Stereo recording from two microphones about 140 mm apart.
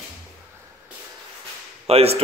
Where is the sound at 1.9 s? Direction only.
45° right (ahead or behind).